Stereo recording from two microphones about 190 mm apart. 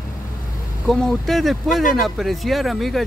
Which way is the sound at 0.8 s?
Centre (ahead or behind).